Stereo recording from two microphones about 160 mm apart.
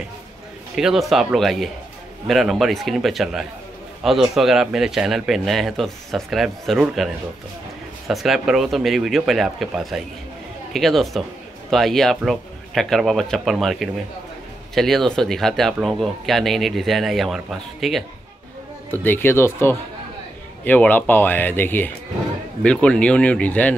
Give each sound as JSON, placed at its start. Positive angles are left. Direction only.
{"t": 0.7, "sound": "speech", "side_deg": 0}
{"t": 8.1, "sound": "speech", "side_deg": 0}
{"t": 18.9, "sound": "speech", "side_deg": 15}